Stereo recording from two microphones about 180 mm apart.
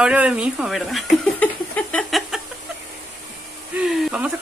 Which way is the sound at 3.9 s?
5° right (ahead or behind).